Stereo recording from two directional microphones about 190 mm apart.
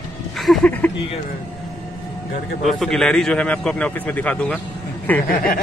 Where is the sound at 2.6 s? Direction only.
Centre (ahead or behind).